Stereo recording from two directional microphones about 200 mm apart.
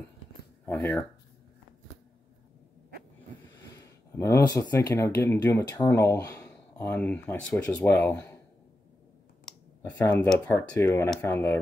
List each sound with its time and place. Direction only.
0.7 s speech: 10° left (ahead or behind)
4.1 s speech: 15° left (ahead or behind)
9.8 s speech: 10° left (ahead or behind)